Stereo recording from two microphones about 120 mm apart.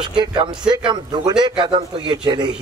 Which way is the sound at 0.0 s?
40° right (ahead or behind).